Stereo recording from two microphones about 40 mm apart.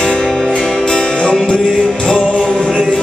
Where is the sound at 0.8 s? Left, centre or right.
Left.